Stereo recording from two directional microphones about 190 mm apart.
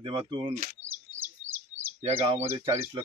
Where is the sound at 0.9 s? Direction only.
10° right (ahead or behind).